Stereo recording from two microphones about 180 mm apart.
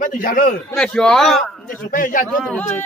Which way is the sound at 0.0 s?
50° left (ahead or behind).